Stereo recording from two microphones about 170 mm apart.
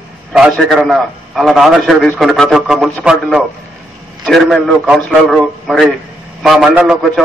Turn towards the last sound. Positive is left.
turn(degrees=-5)  # may be behind; listen again after turning